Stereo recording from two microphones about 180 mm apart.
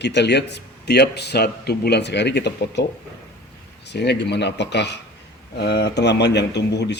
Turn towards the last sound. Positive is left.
turn(degrees=70)  # may be behind; listen again after turning